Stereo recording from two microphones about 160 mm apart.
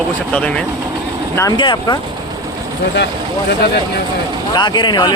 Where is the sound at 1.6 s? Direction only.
25° left (ahead or behind).